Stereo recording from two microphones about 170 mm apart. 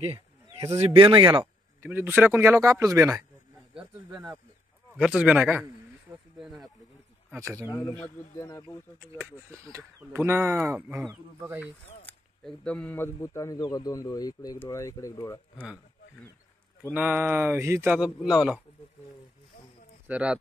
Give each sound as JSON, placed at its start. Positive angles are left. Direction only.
{"t": 0.0, "sound": "speech", "side_deg": -35}
{"t": 1.8, "sound": "speech", "side_deg": -15}
{"t": 4.9, "sound": "speech", "side_deg": -5}
{"t": 7.2, "sound": "speech", "side_deg": -15}
{"t": 8.0, "sound": "a man's voice", "side_deg": 15}
{"t": 9.2, "sound": "speech", "side_deg": -15}
{"t": 12.1, "sound": "a man's voice", "side_deg": 5}
{"t": 16.9, "sound": "speech", "side_deg": -10}
{"t": 17.9, "sound": "speech", "side_deg": -5}
{"t": 20.1, "sound": "speech", "side_deg": -5}